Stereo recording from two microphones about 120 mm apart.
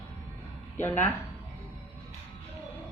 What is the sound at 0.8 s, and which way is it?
Speech, 20° left (ahead or behind).